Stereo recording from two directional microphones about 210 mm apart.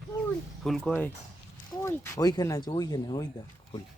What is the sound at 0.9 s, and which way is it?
Speech, 10° left (ahead or behind).